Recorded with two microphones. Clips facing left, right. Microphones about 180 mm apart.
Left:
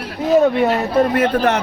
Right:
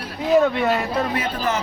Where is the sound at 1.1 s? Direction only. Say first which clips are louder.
Left 8 dB; 60° left (ahead or behind).